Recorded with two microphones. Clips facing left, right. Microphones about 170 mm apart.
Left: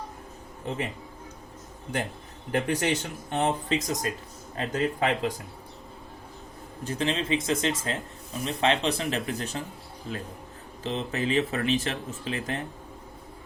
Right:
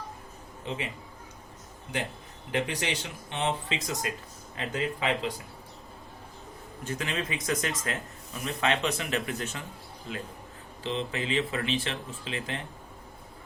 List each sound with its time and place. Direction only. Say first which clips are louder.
0.7 s speech: left 3 dB; 45° left (ahead or behind)
2.5 s speech: left 4 dB; 45° left (ahead or behind)
6.8 s speech: left 5 dB; 30° left (ahead or behind)
10.8 s speech: left 3 dB; 40° left (ahead or behind)